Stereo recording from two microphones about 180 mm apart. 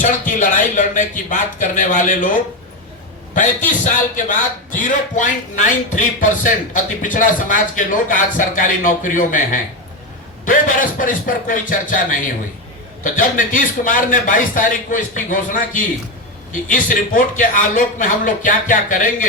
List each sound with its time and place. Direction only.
0.0 s a man's voice: 45° left (ahead or behind)
3.3 s a man's voice: 45° left (ahead or behind)